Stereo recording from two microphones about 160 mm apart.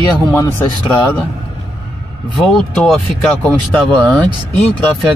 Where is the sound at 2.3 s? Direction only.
5° left (ahead or behind).